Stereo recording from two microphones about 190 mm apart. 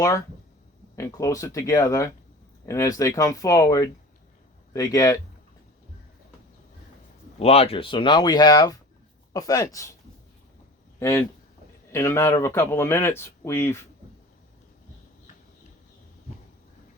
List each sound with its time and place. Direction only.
0.9 s speech: 15° left (ahead or behind)
7.3 s speech: 30° left (ahead or behind)
11.9 s speech: 15° left (ahead or behind)